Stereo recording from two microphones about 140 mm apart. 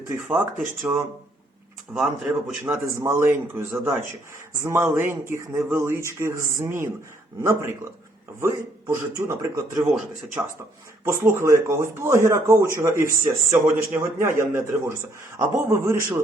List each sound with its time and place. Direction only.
0.8 s speech: 20° right (ahead or behind)
1.9 s speech: 5° right (ahead or behind)
2.6 s speech: 20° right (ahead or behind)